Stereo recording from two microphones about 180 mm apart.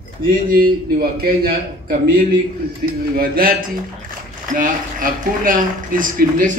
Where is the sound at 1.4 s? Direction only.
55° right (ahead or behind).